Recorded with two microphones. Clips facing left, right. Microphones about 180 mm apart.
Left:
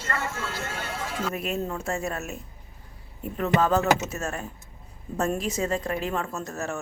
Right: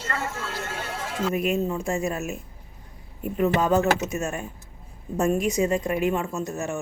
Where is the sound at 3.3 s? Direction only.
10° right (ahead or behind).